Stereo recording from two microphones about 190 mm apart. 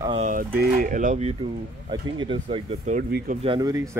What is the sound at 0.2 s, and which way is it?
Speech, 45° right (ahead or behind).